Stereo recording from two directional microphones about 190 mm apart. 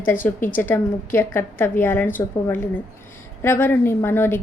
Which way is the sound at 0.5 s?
10° left (ahead or behind).